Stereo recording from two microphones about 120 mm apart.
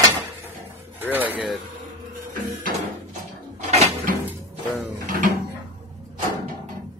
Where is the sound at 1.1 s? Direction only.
15° right (ahead or behind).